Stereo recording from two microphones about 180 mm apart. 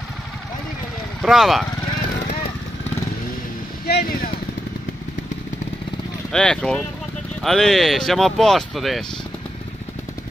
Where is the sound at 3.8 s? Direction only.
60° left (ahead or behind).